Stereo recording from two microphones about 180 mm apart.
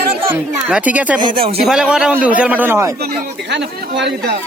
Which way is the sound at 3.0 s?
65° right (ahead or behind).